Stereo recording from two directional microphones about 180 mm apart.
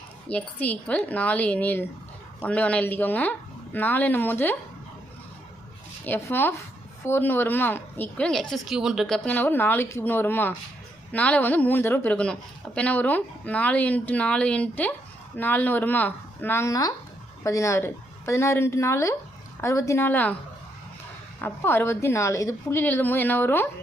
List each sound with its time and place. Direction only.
0.3 s a woman's voice: 10° left (ahead or behind)
6.1 s a woman's voice: 15° left (ahead or behind)
21.4 s a woman's voice: 10° left (ahead or behind)